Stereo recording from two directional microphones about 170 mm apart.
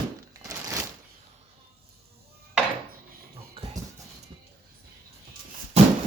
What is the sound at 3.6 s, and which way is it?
Dog, 35° right (ahead or behind).